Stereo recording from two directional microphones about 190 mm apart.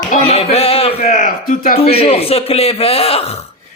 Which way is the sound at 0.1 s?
35° left (ahead or behind).